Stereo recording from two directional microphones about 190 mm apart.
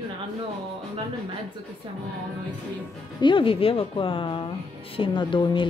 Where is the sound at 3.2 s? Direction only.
25° left (ahead or behind).